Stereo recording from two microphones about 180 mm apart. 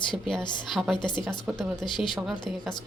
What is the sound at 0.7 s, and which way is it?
Speech, centre (ahead or behind).